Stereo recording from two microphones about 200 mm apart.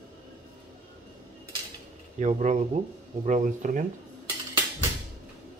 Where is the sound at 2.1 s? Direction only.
35° right (ahead or behind).